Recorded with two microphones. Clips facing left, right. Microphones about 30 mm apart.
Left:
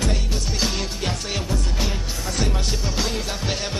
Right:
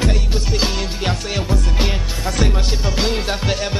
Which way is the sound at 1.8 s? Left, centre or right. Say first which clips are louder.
Right 5 dB; right.